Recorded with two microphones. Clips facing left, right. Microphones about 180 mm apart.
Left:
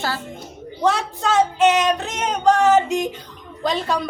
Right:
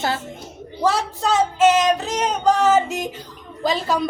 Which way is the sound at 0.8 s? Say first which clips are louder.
Even; centre (ahead or behind).